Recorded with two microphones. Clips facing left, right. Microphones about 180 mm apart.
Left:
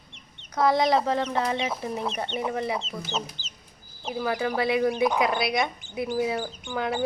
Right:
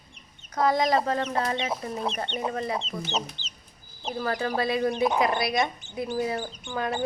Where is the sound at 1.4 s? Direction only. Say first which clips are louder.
Left 1 dB; 15° left (ahead or behind).